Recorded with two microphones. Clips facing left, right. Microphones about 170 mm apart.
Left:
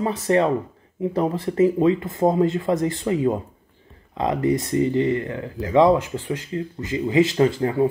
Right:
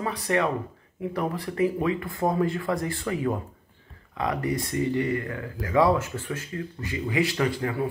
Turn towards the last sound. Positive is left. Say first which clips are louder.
# left 7 dB
turn(degrees=25)  # may be behind; listen again after turning